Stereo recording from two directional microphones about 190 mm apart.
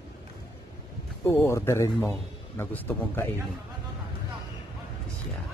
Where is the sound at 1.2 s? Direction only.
15° left (ahead or behind).